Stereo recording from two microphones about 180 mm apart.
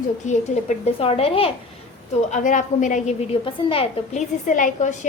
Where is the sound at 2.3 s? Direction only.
45° left (ahead or behind).